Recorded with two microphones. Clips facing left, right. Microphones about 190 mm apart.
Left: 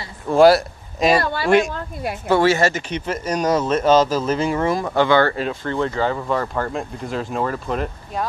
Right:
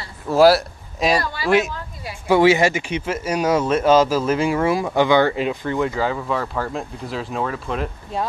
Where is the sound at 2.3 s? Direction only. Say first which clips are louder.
Right 2 dB; 15° right (ahead or behind).